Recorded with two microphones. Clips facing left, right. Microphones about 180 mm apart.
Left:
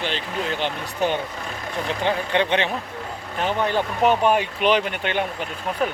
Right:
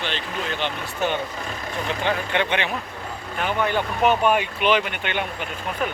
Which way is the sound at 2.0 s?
25° left (ahead or behind).